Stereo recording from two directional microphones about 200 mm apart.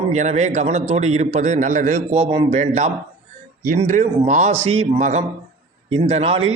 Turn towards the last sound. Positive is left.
turn(degrees=-30)  # may be behind; listen again after turning